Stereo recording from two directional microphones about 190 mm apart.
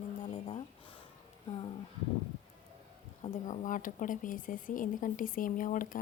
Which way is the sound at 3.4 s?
45° left (ahead or behind).